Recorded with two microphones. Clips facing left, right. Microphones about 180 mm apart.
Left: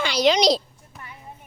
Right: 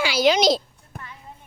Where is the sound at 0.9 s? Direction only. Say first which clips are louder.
Right 3 dB; 55° right (ahead or behind).